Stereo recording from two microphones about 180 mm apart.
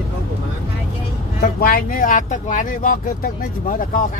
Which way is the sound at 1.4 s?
55° left (ahead or behind).